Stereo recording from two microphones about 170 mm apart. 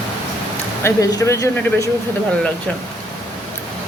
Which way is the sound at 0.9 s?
20° left (ahead or behind).